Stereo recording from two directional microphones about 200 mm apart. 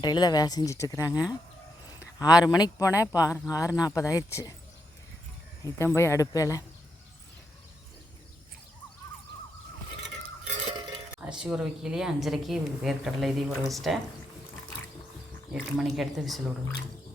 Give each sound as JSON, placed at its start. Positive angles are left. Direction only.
{"t": 0.0, "sound": "speech", "side_deg": 20}
{"t": 5.6, "sound": "speech", "side_deg": 15}
{"t": 11.2, "sound": "speech", "side_deg": -5}
{"t": 15.5, "sound": "speech", "side_deg": 0}